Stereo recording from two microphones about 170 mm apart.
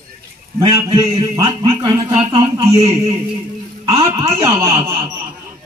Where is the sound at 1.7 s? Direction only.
20° right (ahead or behind).